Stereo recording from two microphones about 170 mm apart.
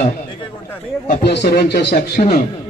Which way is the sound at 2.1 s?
50° left (ahead or behind).